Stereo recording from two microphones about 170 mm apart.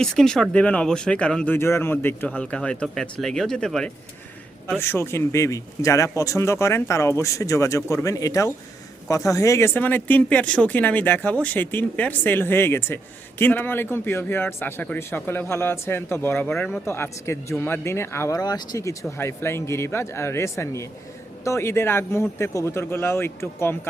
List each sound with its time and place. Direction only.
0.0 s speech: 5° left (ahead or behind)